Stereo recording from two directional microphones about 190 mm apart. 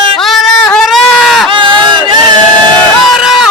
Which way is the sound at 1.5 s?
25° right (ahead or behind).